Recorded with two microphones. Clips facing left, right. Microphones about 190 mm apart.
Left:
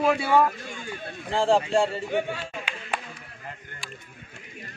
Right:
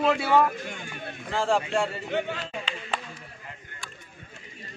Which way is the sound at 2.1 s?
10° left (ahead or behind).